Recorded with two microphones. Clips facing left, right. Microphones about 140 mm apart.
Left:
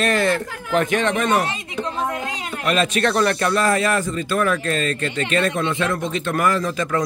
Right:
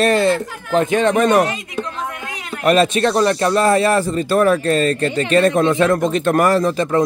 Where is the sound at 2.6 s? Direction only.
40° right (ahead or behind).